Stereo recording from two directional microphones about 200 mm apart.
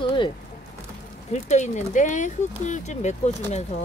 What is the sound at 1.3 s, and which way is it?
Speech, 35° left (ahead or behind).